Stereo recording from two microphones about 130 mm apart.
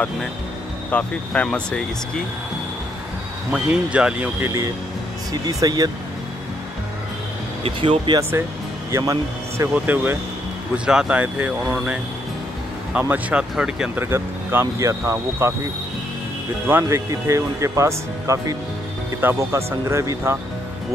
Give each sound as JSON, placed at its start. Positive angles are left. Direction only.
{"t": 0.8, "sound": "speech", "side_deg": 10}
{"t": 3.5, "sound": "speech", "side_deg": -5}
{"t": 4.5, "sound": "speech", "side_deg": -25}
{"t": 7.6, "sound": "speech", "side_deg": -45}
{"t": 8.2, "sound": "speech", "side_deg": -15}
{"t": 9.9, "sound": "speech", "side_deg": -15}
{"t": 14.0, "sound": "speech", "side_deg": -20}
{"t": 16.6, "sound": "speech", "side_deg": -20}